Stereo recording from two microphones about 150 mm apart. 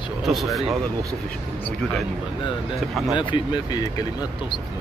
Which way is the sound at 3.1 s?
30° left (ahead or behind).